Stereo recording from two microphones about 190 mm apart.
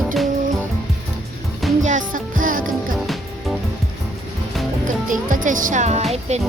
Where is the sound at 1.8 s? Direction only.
45° right (ahead or behind).